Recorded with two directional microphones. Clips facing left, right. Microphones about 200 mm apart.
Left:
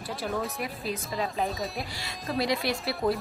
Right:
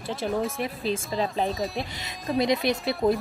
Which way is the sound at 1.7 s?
20° right (ahead or behind).